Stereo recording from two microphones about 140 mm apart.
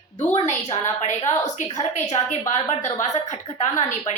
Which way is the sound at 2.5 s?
55° left (ahead or behind).